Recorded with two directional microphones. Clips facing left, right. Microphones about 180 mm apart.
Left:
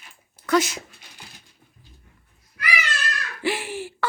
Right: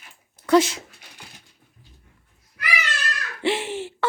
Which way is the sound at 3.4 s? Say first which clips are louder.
Right 3 dB; 25° right (ahead or behind).